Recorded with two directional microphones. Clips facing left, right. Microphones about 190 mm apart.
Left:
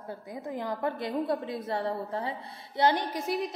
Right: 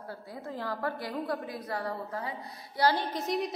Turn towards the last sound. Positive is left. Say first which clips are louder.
# even
turn(degrees=5)  # may be behind; listen again after turning